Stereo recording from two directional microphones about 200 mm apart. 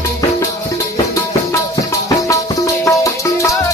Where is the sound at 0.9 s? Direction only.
15° left (ahead or behind).